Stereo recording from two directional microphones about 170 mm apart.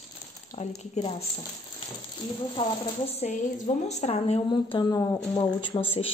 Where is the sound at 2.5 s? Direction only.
35° left (ahead or behind).